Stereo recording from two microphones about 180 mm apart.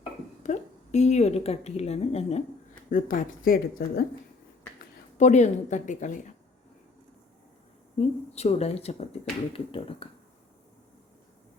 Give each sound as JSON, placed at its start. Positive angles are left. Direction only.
{"t": 0.4, "sound": "a woman's voice", "side_deg": 40}
{"t": 2.9, "sound": "speech", "side_deg": 50}
{"t": 5.1, "sound": "speech", "side_deg": 40}
{"t": 7.9, "sound": "speech", "side_deg": 35}